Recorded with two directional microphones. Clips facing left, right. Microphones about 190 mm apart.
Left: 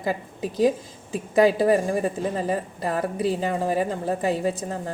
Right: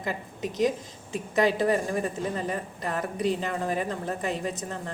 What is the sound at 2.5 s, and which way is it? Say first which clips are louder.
Speech: left 5 dB; 35° left (ahead or behind).